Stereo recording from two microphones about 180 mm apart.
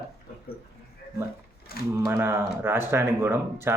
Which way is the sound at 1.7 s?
55° left (ahead or behind).